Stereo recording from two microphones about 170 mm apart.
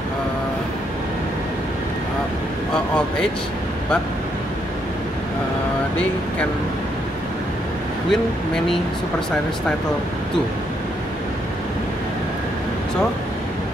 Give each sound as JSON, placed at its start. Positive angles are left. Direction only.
{"t": 8.1, "sound": "speech", "side_deg": 0}